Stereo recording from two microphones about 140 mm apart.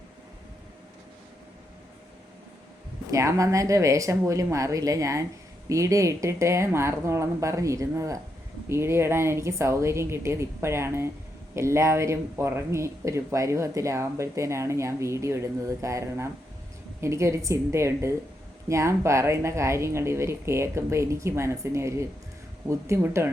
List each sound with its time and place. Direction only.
3.1 s speech: 25° right (ahead or behind)